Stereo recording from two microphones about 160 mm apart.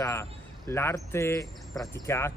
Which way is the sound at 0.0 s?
15° left (ahead or behind).